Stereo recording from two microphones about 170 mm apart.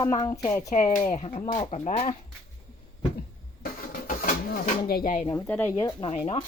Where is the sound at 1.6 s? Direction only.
45° left (ahead or behind).